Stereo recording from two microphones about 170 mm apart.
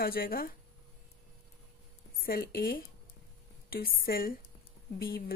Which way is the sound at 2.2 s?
60° left (ahead or behind).